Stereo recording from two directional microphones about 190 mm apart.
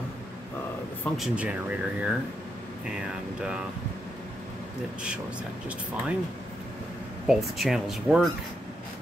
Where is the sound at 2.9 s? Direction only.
5° right (ahead or behind).